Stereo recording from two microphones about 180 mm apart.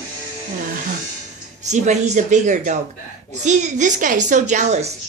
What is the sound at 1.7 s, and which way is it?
A woman's voice, 40° right (ahead or behind).